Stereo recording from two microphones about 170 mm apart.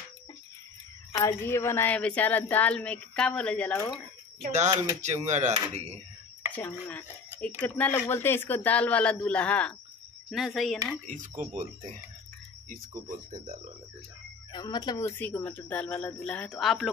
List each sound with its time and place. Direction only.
1.1 s a woman's voice: 15° left (ahead or behind)
5.0 s speech: 40° right (ahead or behind)
6.5 s a woman's voice: 10° left (ahead or behind)
11.1 s speech: 50° right (ahead or behind)
14.5 s speech: 25° left (ahead or behind)
15.0 s a woman's voice: 10° left (ahead or behind)